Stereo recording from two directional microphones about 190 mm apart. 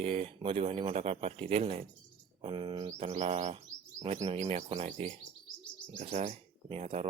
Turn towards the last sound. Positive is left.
turn(degrees=-30)  # may be behind; listen again after turning